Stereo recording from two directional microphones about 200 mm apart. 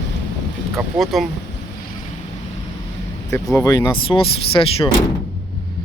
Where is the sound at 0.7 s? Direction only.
Centre (ahead or behind).